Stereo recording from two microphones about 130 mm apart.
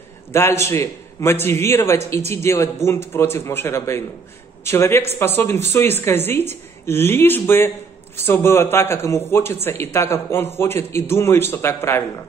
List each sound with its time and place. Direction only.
0.3 s a man's voice: 20° left (ahead or behind)